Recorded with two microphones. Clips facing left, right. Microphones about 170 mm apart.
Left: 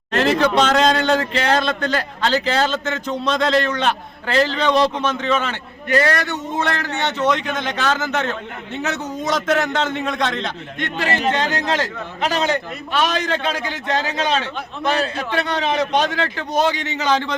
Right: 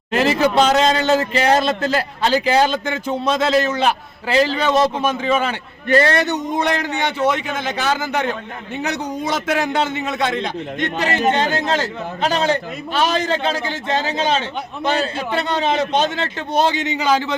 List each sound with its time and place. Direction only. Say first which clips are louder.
0.1 s a man's voice: right 1 dB; 5° right (ahead or behind)
5.9 s a man's voice: right 3 dB; 30° right (ahead or behind); by 10.5 s 10° right (ahead or behind)
11.3 s a man's voice: right 3 dB; 30° right (ahead or behind)
16.8 s a man's voice: right 2 dB; 15° right (ahead or behind)